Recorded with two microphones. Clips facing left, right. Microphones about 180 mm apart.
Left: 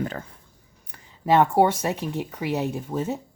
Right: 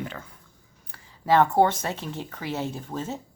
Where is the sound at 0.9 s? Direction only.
15° left (ahead or behind).